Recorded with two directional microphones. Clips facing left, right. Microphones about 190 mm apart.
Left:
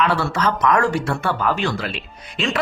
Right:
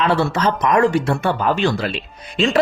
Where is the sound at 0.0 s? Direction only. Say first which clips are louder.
Right 2 dB; 25° right (ahead or behind).